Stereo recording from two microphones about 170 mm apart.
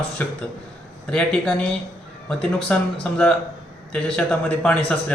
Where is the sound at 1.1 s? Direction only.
5° left (ahead or behind).